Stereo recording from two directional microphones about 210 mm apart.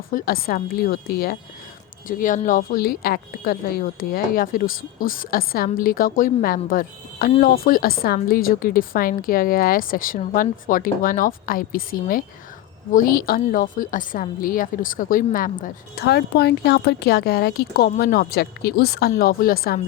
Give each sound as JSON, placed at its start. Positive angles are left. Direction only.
{"t": 0.1, "sound": "speech", "side_deg": 45}